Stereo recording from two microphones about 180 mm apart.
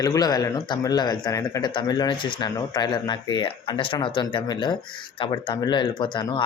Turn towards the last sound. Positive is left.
turn(degrees=25)  # may be behind; listen again after turning